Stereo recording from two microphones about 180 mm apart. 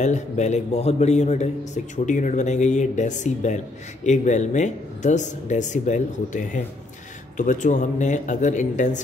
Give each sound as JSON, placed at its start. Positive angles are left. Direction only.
{"t": 0.0, "sound": "a man's voice", "side_deg": 40}